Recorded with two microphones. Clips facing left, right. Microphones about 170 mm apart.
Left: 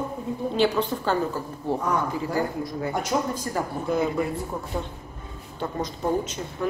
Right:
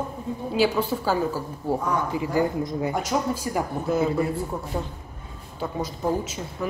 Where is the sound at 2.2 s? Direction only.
20° right (ahead or behind).